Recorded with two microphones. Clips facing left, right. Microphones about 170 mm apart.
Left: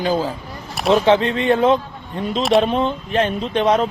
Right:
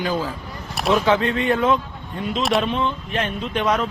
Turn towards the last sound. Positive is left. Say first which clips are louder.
# left 4 dB
turn(degrees=30)  # may be behind; listen again after turning